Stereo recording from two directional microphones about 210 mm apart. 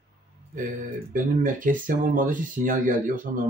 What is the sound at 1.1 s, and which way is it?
Speech, 40° right (ahead or behind).